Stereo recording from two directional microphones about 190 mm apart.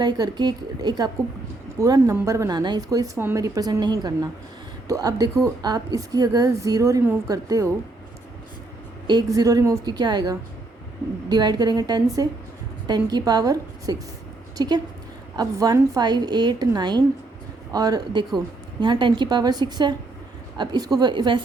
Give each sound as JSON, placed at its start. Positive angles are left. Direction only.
{"t": 0.0, "sound": "speech", "side_deg": -20}
{"t": 9.0, "sound": "speech", "side_deg": -20}